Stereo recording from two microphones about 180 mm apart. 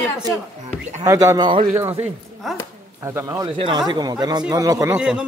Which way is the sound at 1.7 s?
15° right (ahead or behind).